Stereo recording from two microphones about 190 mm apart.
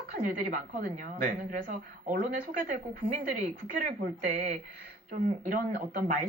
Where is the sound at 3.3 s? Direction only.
45° right (ahead or behind).